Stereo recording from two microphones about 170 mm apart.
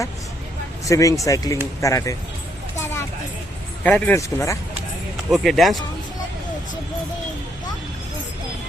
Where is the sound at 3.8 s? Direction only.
10° left (ahead or behind).